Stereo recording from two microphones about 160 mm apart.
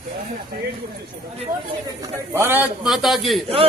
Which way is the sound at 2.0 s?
15° right (ahead or behind).